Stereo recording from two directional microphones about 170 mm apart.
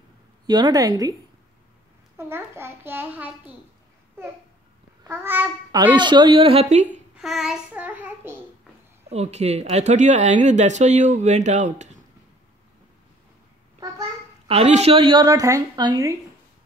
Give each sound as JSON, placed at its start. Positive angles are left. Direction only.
{"t": 0.5, "sound": "a woman's voice", "side_deg": -25}
{"t": 2.1, "sound": "a child's voice", "side_deg": -15}
{"t": 5.0, "sound": "a child's voice", "side_deg": -15}
{"t": 5.9, "sound": "speech", "side_deg": -25}
{"t": 7.2, "sound": "a child's voice", "side_deg": 0}
{"t": 9.1, "sound": "speech", "side_deg": -40}
{"t": 14.5, "sound": "a woman's voice", "side_deg": -35}